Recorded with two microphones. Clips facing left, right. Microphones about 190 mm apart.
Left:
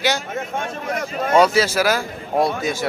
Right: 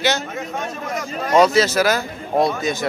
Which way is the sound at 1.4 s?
10° left (ahead or behind).